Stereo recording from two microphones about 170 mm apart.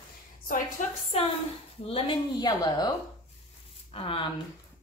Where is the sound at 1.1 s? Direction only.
40° left (ahead or behind).